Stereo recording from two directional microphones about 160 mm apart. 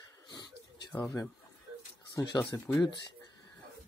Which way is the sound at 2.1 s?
20° left (ahead or behind).